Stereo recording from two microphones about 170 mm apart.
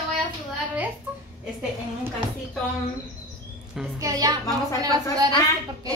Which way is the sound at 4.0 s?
20° right (ahead or behind).